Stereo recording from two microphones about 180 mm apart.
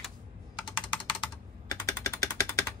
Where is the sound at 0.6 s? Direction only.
25° left (ahead or behind).